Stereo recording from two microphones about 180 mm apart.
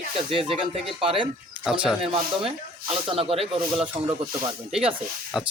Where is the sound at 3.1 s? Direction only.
30° right (ahead or behind).